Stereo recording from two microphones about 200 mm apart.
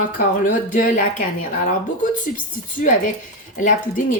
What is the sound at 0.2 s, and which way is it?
Speech, 40° left (ahead or behind).